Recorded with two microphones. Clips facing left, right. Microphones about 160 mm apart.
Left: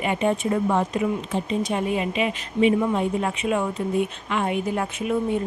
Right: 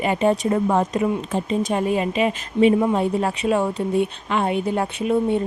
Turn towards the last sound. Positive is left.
turn(degrees=-30)  # may be behind; listen again after turning